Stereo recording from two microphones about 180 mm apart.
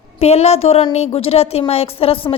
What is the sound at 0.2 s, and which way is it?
A woman's voice, 35° left (ahead or behind).